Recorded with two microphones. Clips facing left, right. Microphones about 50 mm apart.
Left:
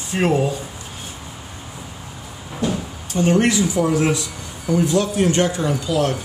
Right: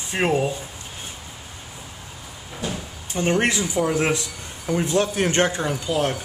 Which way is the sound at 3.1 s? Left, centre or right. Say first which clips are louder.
Left 4 dB; right.